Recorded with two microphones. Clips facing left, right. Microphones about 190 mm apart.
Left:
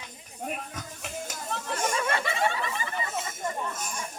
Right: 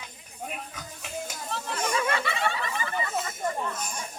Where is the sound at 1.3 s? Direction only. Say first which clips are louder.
Left 1 dB; 45° left (ahead or behind).